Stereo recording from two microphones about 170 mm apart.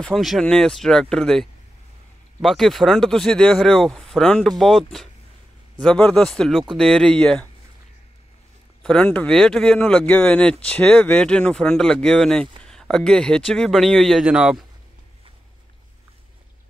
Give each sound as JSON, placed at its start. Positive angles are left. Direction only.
{"t": 0.0, "sound": "speech", "side_deg": 0}
{"t": 8.8, "sound": "speech", "side_deg": 5}